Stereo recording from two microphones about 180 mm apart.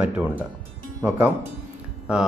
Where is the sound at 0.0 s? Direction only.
10° right (ahead or behind).